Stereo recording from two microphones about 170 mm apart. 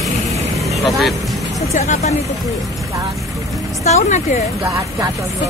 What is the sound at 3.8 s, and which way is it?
Speech, 45° left (ahead or behind).